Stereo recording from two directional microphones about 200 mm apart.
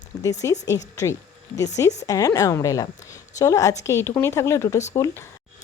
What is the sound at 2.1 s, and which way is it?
A woman's voice, 15° left (ahead or behind).